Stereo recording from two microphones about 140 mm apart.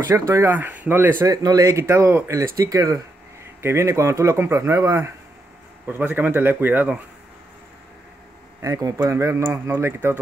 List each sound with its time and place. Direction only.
0.3 s speech: 15° right (ahead or behind)
1.2 s speech: 25° right (ahead or behind)
8.5 s speech: 20° right (ahead or behind)